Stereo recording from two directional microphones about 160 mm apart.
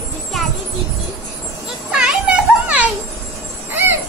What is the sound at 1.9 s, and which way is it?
Children playing, 5° right (ahead or behind).